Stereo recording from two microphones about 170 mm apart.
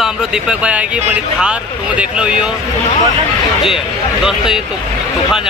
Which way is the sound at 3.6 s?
5° right (ahead or behind).